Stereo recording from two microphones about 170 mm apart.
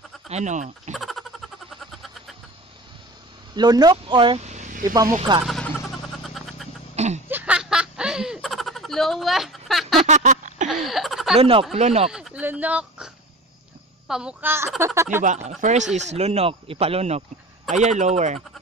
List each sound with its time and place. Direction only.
0.3 s a man's voice: 45° right (ahead or behind)
0.9 s a sound: centre (ahead or behind)
3.5 s speech: 25° right (ahead or behind)
4.4 s vehicle: 40° right (ahead or behind)
4.8 s speech: 20° right (ahead or behind)
5.4 s vehicle: centre (ahead or behind)
7.2 s snicker: 10° right (ahead or behind)
9.9 s a sound: 45° right (ahead or behind)
10.7 s a sound: centre (ahead or behind)
11.3 s speech: 35° right (ahead or behind)
12.1 s a sound: 5° right (ahead or behind)
14.0 s a child's voice: 5° right (ahead or behind)
15.2 s a man's voice: 45° right (ahead or behind)